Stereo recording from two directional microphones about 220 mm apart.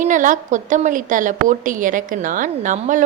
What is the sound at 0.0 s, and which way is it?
Speech, 35° right (ahead or behind).